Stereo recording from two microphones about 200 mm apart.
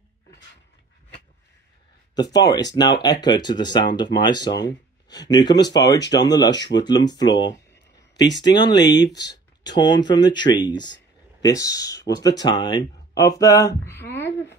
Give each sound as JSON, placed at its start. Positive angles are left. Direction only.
{"t": 2.1, "sound": "speech", "side_deg": 20}
{"t": 9.1, "sound": "speech", "side_deg": 60}
{"t": 9.6, "sound": "speech", "side_deg": 20}